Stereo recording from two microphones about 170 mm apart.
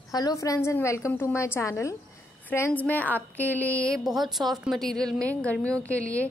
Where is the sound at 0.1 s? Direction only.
20° left (ahead or behind).